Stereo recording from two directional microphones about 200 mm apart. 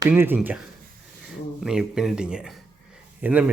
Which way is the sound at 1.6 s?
Centre (ahead or behind).